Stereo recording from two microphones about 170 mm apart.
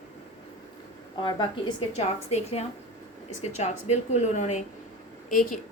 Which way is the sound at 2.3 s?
40° left (ahead or behind).